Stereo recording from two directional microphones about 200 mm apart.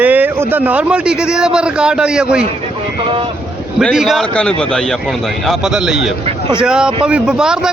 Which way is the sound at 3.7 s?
Centre (ahead or behind).